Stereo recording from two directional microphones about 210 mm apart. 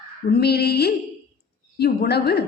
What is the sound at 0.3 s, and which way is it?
A woman's voice, 50° left (ahead or behind).